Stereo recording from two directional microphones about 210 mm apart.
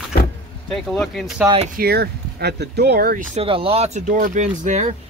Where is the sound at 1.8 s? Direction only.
50° right (ahead or behind).